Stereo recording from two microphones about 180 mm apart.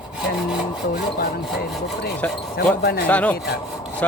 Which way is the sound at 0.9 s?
60° left (ahead or behind).